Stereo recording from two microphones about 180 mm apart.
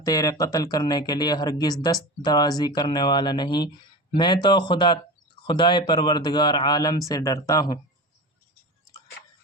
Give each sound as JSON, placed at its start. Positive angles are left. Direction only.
{"t": 0.0, "sound": "speech", "side_deg": 20}